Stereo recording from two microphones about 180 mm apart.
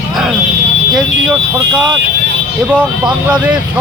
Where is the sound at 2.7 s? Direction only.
5° right (ahead or behind).